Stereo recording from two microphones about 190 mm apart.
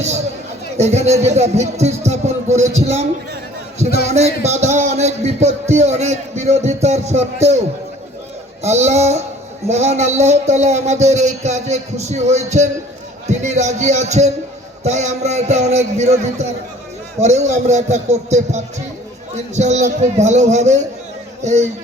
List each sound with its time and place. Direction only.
0.8 s a man's voice: 35° right (ahead or behind)
4.0 s a man's voice: 35° right (ahead or behind)
8.6 s a man's voice: 35° right (ahead or behind)